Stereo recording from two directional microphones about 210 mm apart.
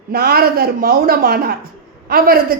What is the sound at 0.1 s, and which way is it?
A woman's voice, 45° right (ahead or behind).